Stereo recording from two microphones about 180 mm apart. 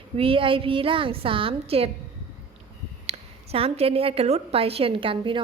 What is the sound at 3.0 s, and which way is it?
A woman's voice, 35° right (ahead or behind).